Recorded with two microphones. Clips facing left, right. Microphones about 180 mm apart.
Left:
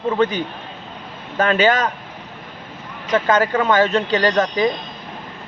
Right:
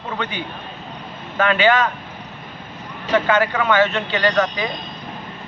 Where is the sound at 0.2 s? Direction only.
40° left (ahead or behind).